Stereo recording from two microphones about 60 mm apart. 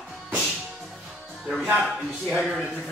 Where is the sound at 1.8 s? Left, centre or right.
Centre.